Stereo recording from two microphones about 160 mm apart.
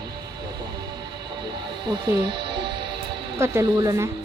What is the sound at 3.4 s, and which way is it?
Speech, 15° right (ahead or behind).